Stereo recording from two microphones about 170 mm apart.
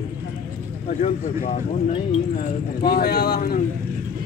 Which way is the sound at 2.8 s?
65° left (ahead or behind).